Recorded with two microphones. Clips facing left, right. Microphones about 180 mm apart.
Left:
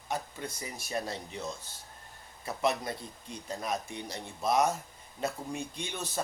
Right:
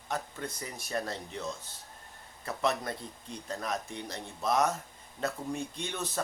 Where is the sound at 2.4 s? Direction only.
10° left (ahead or behind).